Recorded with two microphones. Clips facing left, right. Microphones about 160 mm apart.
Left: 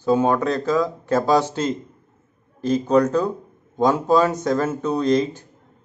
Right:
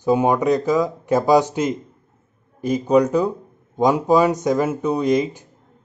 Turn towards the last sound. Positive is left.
turn(degrees=-15)  # may be behind; listen again after turning